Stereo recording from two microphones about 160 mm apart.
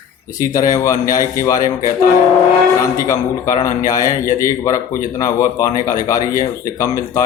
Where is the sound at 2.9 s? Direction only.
20° left (ahead or behind).